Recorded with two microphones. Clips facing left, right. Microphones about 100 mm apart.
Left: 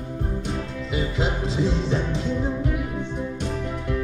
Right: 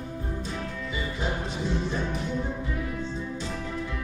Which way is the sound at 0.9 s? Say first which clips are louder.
Left 6 dB; 90° left.